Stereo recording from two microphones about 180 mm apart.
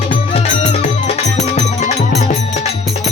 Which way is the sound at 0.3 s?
40° left (ahead or behind).